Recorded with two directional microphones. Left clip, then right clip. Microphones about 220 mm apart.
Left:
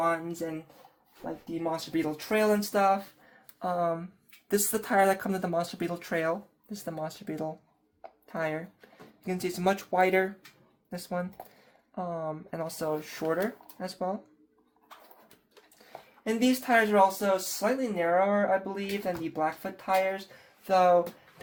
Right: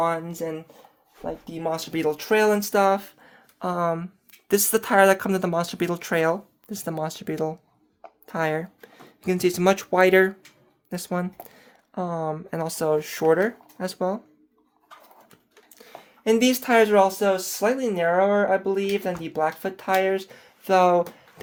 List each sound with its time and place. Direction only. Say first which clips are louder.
0.0 s speech: right 4 dB; 45° right (ahead or behind)
1.6 s speech: right 6 dB; 55° right (ahead or behind)
16.2 s speech: right 8 dB; 55° right (ahead or behind)